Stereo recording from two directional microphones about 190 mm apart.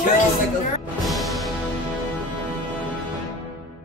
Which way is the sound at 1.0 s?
Centre (ahead or behind).